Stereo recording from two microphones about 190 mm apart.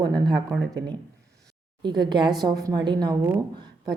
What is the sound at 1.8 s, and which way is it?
A woman's voice, 25° right (ahead or behind).